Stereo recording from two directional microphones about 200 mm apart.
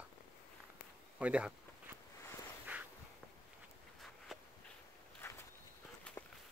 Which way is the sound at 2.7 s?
5° right (ahead or behind).